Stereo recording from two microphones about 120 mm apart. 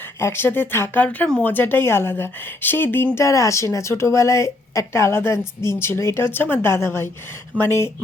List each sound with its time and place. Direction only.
0.2 s speech: 20° left (ahead or behind)